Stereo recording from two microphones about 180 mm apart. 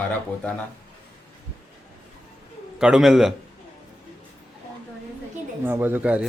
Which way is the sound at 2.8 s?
5° right (ahead or behind).